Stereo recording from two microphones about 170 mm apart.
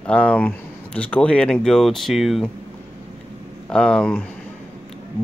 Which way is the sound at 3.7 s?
5° left (ahead or behind).